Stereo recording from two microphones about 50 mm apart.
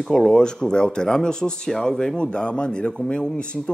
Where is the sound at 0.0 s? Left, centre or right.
Centre.